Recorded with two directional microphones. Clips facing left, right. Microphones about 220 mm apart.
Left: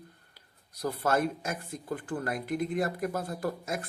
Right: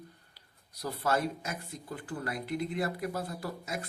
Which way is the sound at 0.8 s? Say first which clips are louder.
Left 3 dB; 50° left (ahead or behind).